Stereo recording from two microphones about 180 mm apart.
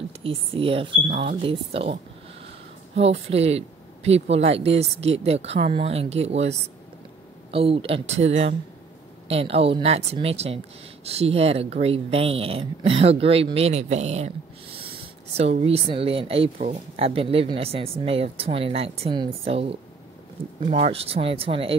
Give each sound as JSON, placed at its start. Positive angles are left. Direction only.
{"t": 0.2, "sound": "speech", "side_deg": -30}
{"t": 3.0, "sound": "speech", "side_deg": -35}
{"t": 7.5, "sound": "speech", "side_deg": -30}